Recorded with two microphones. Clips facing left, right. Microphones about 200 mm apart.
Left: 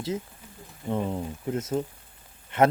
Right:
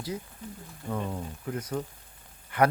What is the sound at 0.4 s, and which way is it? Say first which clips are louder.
Speech: right 9 dB; 5° left (ahead or behind).